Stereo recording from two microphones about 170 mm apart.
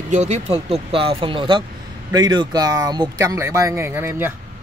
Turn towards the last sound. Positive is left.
turn(degrees=-15)  # may be behind; listen again after turning